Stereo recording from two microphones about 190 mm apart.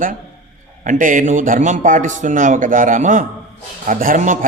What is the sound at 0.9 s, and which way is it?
A man's voice, 45° right (ahead or behind).